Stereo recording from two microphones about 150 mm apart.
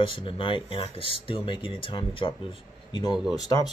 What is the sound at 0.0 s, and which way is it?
Speech, 35° left (ahead or behind).